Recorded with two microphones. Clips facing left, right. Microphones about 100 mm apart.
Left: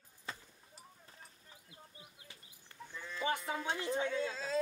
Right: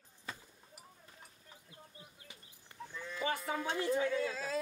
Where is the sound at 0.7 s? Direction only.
30° left (ahead or behind).